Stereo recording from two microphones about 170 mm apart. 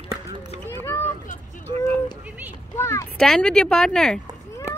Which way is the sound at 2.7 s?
15° left (ahead or behind).